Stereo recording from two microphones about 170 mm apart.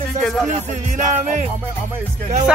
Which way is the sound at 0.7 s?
45° right (ahead or behind).